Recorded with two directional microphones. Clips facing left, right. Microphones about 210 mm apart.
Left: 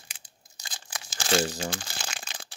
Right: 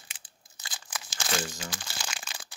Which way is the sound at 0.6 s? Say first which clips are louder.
Even; 30° left (ahead or behind).